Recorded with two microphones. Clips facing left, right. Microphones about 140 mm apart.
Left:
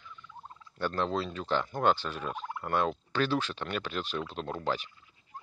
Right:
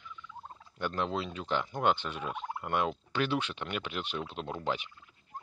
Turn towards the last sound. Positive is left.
turn(degrees=-15)  # may be behind; listen again after turning